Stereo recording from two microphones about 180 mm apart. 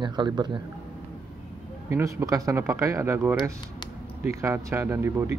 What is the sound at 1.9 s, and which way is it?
Speech, 15° right (ahead or behind).